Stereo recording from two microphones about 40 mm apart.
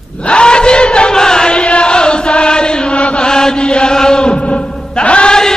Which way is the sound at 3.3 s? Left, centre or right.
Centre.